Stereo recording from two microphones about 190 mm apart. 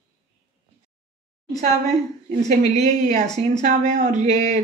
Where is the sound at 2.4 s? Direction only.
35° right (ahead or behind).